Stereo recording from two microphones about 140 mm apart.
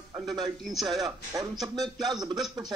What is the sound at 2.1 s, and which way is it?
Speech, 30° right (ahead or behind).